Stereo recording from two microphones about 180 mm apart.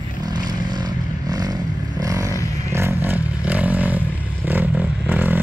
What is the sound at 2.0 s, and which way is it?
Vehicle, 20° right (ahead or behind).